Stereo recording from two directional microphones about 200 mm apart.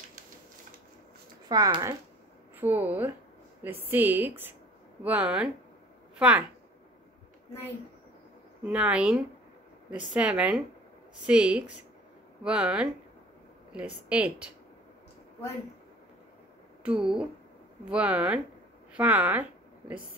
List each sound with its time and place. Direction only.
1.5 s a woman's voice: 20° right (ahead or behind)
8.6 s speech: 5° right (ahead or behind)
16.8 s a woman's voice: 5° right (ahead or behind)